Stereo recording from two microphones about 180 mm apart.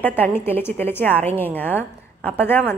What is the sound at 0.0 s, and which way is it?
A woman's voice, 10° left (ahead or behind).